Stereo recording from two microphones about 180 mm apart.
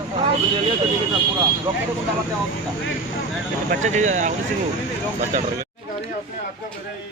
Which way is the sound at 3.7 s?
40° right (ahead or behind).